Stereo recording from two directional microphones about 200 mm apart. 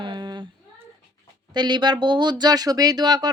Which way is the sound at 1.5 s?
20° right (ahead or behind).